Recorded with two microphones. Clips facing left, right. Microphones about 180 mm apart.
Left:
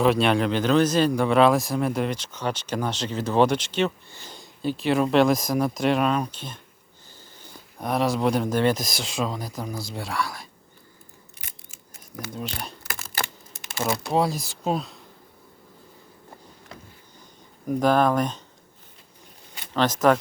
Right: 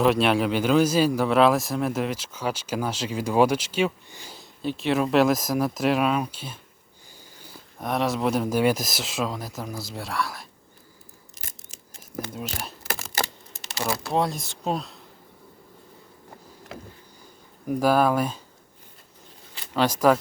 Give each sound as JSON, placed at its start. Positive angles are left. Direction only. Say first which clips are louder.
{"t": 0.0, "sound": "speech", "louder": "even", "side_deg": 0}
{"t": 12.3, "sound": "speech", "louder": "left 1 dB", "side_deg": -5}
{"t": 13.7, "sound": "speech", "louder": "left 2 dB", "side_deg": 20}
{"t": 14.1, "sound": "speech", "louder": "left 2 dB", "side_deg": 0}
{"t": 17.7, "sound": "speech", "louder": "even", "side_deg": -5}
{"t": 19.7, "sound": "speech", "louder": "even", "side_deg": -10}